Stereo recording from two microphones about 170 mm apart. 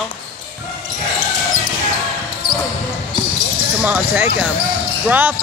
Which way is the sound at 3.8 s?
10° right (ahead or behind).